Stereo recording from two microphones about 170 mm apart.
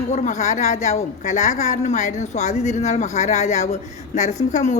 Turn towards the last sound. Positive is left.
turn(degrees=40)  # may be behind; listen again after turning